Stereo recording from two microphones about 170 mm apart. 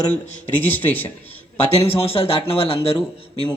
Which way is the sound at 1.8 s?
35° left (ahead or behind).